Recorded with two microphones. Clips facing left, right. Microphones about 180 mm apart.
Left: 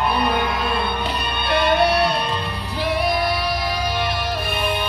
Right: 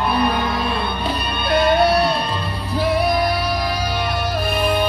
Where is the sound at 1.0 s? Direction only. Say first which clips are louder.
Right 2 dB; 40° right (ahead or behind).